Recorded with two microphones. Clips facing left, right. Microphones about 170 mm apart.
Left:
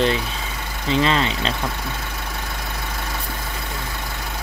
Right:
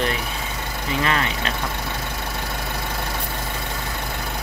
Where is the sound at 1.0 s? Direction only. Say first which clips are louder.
Left 3 dB; 25° left (ahead or behind).